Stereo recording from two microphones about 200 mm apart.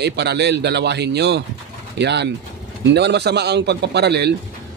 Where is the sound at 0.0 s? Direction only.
55° right (ahead or behind).